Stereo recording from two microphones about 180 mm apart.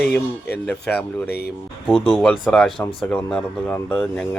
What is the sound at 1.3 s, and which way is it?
Speech, 60° left (ahead or behind).